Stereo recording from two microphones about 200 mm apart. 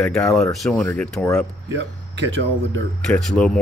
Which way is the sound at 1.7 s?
65° right (ahead or behind).